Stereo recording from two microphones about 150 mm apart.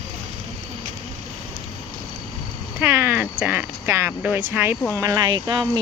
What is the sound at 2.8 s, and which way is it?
Speech, 15° right (ahead or behind).